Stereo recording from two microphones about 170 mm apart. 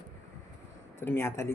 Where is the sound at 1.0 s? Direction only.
15° left (ahead or behind).